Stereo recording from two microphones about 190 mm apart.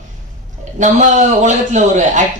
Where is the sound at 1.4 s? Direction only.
40° right (ahead or behind).